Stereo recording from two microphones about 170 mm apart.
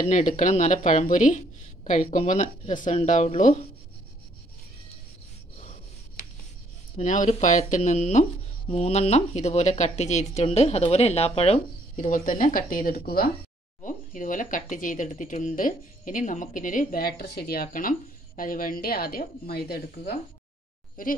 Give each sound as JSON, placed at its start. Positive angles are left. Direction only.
{"t": 0.0, "sound": "speech", "side_deg": 45}
{"t": 7.0, "sound": "speech", "side_deg": 45}
{"t": 13.8, "sound": "speech", "side_deg": 50}
{"t": 21.0, "sound": "speech", "side_deg": 55}